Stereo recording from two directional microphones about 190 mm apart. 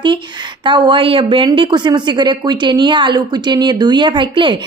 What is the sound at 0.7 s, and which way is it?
A woman's voice, 25° right (ahead or behind).